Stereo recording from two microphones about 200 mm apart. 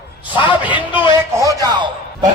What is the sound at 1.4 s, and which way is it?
Speech, 20° right (ahead or behind).